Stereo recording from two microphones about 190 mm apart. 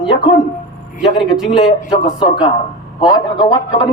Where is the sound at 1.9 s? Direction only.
25° left (ahead or behind).